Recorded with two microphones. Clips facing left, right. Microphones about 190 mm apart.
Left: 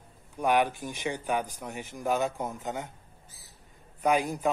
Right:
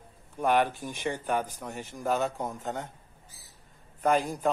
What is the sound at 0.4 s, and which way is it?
A man's voice, centre (ahead or behind).